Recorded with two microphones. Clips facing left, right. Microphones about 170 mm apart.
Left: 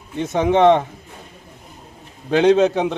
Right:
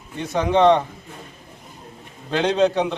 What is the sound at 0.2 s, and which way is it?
Speech, 20° left (ahead or behind).